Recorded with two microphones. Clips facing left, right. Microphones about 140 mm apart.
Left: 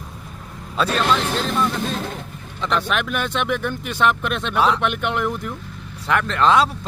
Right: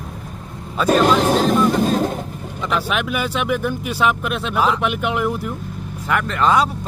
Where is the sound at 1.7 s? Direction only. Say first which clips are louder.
Right 8 dB; 45° right (ahead or behind).